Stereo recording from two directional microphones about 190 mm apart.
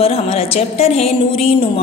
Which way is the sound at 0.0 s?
30° left (ahead or behind).